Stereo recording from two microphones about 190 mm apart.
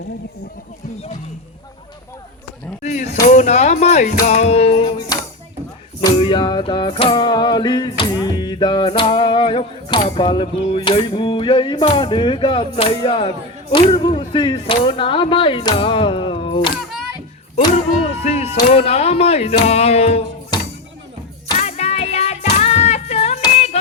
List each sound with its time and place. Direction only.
2.8 s speech: 35° left (ahead or behind)
6.0 s music: 25° left (ahead or behind)
18.1 s music: 35° left (ahead or behind)
18.7 s speech: 35° left (ahead or behind)
21.6 s child singing: 35° left (ahead or behind)